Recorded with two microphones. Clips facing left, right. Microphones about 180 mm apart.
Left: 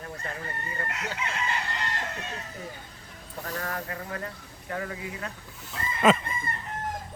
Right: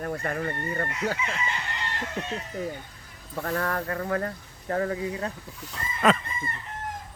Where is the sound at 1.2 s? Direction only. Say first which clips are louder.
Right 2 dB; 70° left (ahead or behind).